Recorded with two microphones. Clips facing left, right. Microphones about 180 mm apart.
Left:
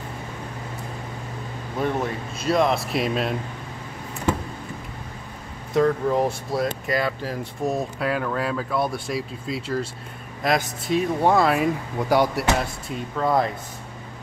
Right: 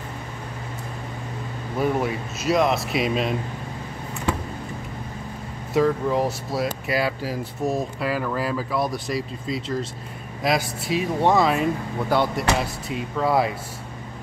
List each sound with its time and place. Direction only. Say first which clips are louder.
1.8 s speech: right 2 dB; 5° right (ahead or behind)
5.7 s speech: even; 5° right (ahead or behind)
12.1 s speech: left 2 dB; 10° left (ahead or behind)
12.5 s speech: right 1 dB; 5° right (ahead or behind)